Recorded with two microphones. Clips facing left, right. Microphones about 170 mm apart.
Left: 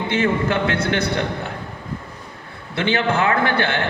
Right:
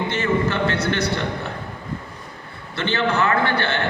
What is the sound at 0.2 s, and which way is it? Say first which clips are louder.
Speech: left 2 dB; 55° left (ahead or behind).